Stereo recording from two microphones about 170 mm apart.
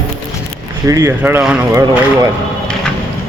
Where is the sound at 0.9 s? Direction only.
15° right (ahead or behind).